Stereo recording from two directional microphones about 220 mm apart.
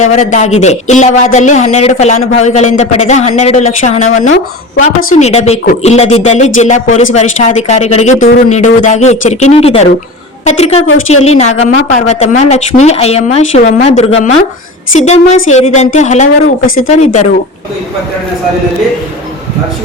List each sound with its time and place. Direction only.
0.0 s speech: 30° left (ahead or behind)